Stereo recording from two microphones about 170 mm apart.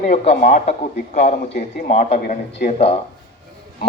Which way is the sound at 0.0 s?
45° left (ahead or behind).